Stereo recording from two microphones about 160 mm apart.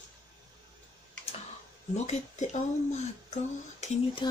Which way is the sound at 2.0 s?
45° left (ahead or behind).